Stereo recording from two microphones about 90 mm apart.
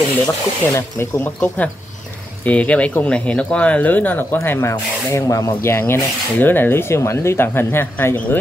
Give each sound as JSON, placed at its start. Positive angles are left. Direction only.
{"t": 0.3, "sound": "speech", "side_deg": 30}
{"t": 2.4, "sound": "speech", "side_deg": 15}
{"t": 4.4, "sound": "speech", "side_deg": 30}